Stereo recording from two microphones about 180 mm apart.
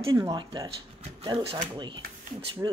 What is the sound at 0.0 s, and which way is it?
Speech, 20° right (ahead or behind).